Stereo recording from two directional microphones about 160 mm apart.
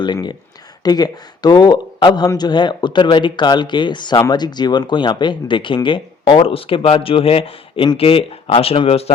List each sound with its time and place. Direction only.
0.0 s speech: 25° left (ahead or behind)